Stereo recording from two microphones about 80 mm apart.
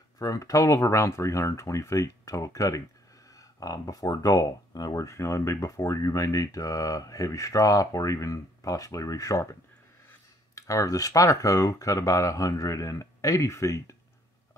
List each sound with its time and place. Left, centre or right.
0.2 s speech: left